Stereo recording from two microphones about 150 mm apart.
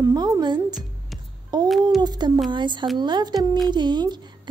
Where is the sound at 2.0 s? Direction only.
30° right (ahead or behind).